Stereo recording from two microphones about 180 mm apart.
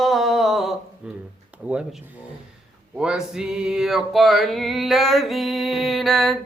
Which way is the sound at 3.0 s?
5° right (ahead or behind).